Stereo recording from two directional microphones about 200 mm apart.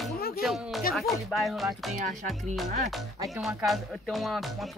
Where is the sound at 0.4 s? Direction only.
Centre (ahead or behind).